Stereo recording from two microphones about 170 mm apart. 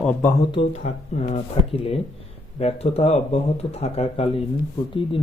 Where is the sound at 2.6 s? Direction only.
35° left (ahead or behind).